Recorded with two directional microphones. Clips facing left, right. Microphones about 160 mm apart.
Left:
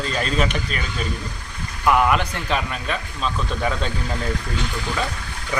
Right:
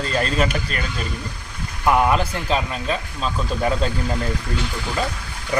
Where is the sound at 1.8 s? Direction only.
25° right (ahead or behind).